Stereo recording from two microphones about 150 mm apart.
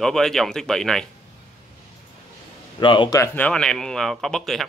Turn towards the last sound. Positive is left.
turn(degrees=0)  # may be behind; listen again after turning